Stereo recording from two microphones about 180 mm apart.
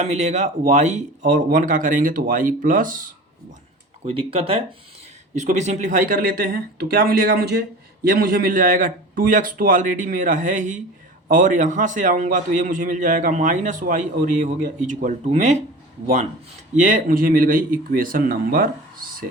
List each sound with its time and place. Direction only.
0.0 s a man's voice: 40° right (ahead or behind)
4.0 s a man's voice: 30° right (ahead or behind)
16.7 s a man's voice: 45° right (ahead or behind)